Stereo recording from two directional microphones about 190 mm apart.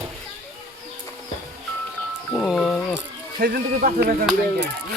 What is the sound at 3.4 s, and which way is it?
Speech, 60° right (ahead or behind).